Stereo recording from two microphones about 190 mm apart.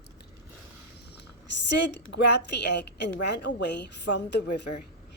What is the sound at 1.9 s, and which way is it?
A woman's voice, 65° left (ahead or behind).